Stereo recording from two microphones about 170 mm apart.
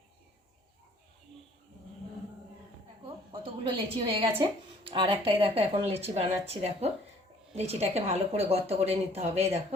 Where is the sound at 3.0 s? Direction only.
30° right (ahead or behind).